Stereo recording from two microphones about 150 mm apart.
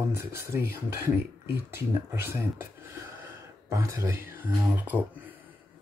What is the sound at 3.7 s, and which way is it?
Speech, 20° right (ahead or behind).